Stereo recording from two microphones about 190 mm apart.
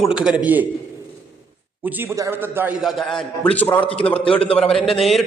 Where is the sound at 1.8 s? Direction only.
10° right (ahead or behind); by 4.2 s 5° left (ahead or behind).